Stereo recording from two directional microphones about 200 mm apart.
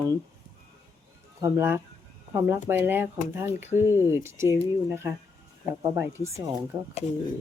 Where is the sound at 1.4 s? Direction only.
15° right (ahead or behind).